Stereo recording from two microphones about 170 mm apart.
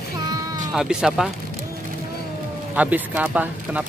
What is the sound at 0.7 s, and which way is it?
Speech, 5° right (ahead or behind).